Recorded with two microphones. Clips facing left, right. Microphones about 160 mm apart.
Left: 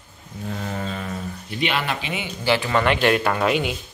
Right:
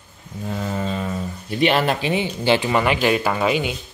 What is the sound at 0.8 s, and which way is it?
Speech, 30° right (ahead or behind).